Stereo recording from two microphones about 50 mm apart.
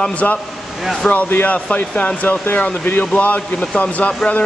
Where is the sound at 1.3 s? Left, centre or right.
Left.